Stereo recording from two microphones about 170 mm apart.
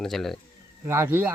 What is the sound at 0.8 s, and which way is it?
Speech, 15° right (ahead or behind).